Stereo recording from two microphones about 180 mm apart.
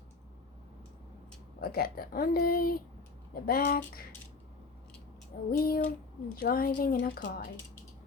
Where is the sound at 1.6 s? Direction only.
55° left (ahead or behind).